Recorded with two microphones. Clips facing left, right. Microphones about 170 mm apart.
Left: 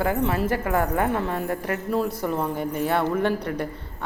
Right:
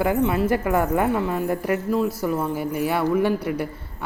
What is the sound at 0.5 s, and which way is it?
Speech, 15° right (ahead or behind).